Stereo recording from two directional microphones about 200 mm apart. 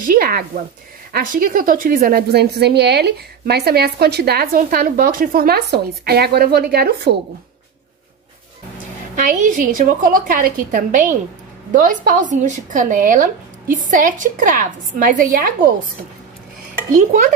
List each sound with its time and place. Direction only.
0.0 s a woman's voice: 45° right (ahead or behind)
9.1 s speech: 40° right (ahead or behind)
16.9 s speech: 40° right (ahead or behind)